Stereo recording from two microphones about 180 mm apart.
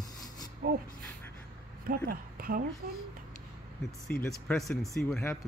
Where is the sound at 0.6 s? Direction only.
55° right (ahead or behind).